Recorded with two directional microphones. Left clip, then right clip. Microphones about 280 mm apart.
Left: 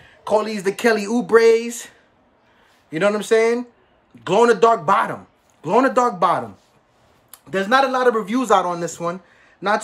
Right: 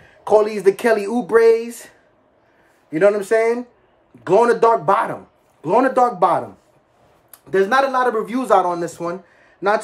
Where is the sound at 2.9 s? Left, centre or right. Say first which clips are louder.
Right 2 dB; centre.